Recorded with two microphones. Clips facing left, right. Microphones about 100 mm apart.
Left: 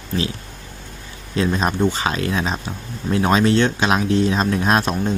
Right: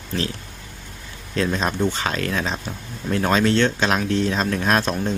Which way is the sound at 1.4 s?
15° left (ahead or behind).